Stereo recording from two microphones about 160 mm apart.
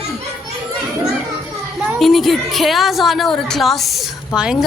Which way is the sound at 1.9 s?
Centre (ahead or behind).